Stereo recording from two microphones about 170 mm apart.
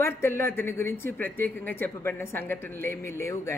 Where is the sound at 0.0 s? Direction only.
15° left (ahead or behind).